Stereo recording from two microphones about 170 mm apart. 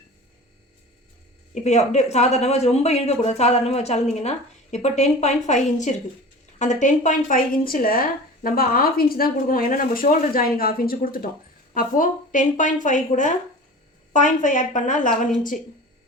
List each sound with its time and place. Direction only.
1.6 s a woman's voice: 40° left (ahead or behind)